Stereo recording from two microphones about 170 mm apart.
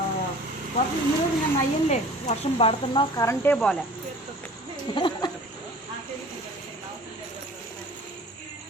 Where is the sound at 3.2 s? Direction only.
10° left (ahead or behind).